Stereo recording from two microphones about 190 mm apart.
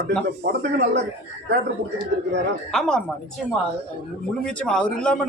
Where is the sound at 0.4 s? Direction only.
65° right (ahead or behind).